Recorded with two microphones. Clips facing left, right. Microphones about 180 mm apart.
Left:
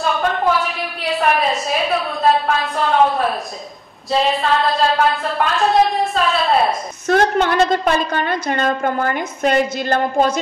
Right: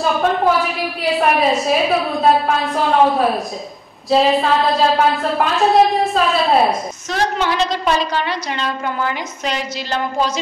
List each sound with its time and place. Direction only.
0.0 s a woman's voice: centre (ahead or behind)
7.1 s a woman's voice: 55° left (ahead or behind)